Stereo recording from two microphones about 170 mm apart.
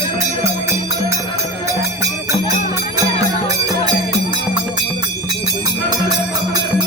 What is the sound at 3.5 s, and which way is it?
Music, 20° right (ahead or behind).